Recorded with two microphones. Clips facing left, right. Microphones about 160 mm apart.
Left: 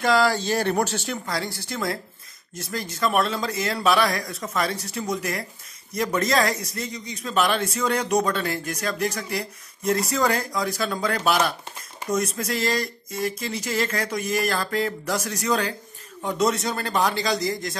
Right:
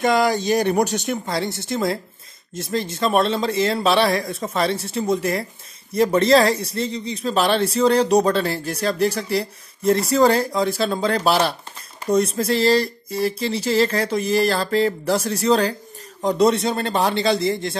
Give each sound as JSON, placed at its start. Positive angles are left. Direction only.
{"t": 0.0, "sound": "speech", "side_deg": -20}